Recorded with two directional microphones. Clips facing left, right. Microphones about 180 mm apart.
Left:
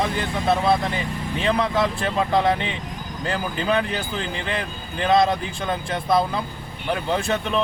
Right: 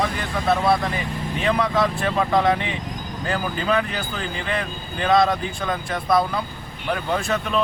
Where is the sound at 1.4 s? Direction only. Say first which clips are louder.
Even; 30° left (ahead or behind).